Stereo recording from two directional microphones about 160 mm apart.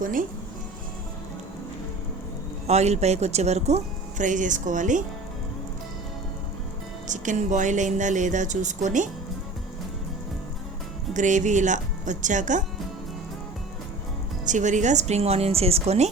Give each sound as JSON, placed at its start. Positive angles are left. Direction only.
{"t": 0.0, "sound": "speech", "side_deg": -60}
{"t": 2.6, "sound": "speech", "side_deg": -45}
{"t": 7.1, "sound": "speech", "side_deg": -50}
{"t": 11.1, "sound": "speech", "side_deg": -50}
{"t": 14.4, "sound": "speech", "side_deg": -50}